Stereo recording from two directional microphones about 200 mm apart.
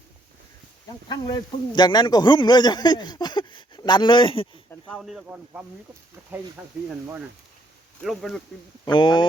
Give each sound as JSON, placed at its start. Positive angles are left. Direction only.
{"t": 1.0, "sound": "a man's voice", "side_deg": 20}
{"t": 4.7, "sound": "speech", "side_deg": 0}
{"t": 8.0, "sound": "speech", "side_deg": 0}
{"t": 8.8, "sound": "a man's voice", "side_deg": 20}